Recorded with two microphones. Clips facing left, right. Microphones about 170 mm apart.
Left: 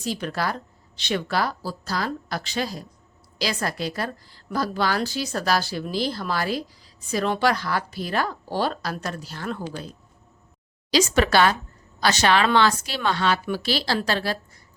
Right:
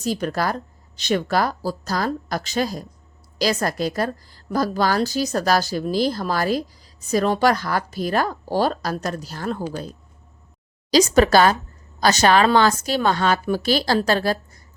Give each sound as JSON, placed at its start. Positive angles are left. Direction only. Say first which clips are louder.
{"t": 0.0, "sound": "a woman's voice", "louder": "right 4 dB", "side_deg": -40}
{"t": 10.9, "sound": "a woman's voice", "louder": "right 5 dB", "side_deg": -40}